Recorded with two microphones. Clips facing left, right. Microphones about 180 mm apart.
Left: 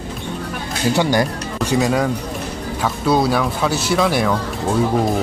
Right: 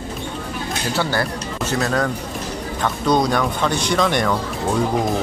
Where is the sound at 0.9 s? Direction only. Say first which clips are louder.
Left 4 dB; 15° left (ahead or behind).